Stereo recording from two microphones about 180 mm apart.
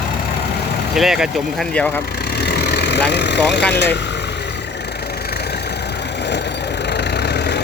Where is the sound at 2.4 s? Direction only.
65° left (ahead or behind).